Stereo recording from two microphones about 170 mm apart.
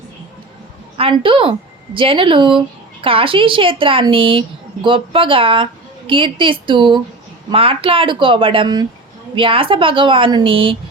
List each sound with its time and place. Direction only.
0.9 s a woman's voice: 30° right (ahead or behind)